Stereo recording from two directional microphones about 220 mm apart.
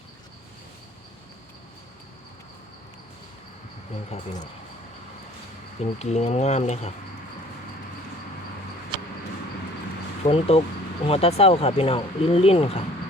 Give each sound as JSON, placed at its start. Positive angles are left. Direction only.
{"t": 4.1, "sound": "speech", "side_deg": 35}
{"t": 5.8, "sound": "speech", "side_deg": 30}
{"t": 10.2, "sound": "speech", "side_deg": 25}